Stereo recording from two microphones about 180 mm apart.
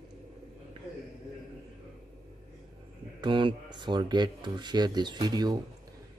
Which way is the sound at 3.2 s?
25° right (ahead or behind).